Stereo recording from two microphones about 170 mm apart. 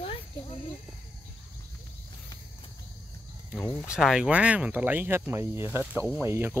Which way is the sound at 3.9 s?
5° right (ahead or behind).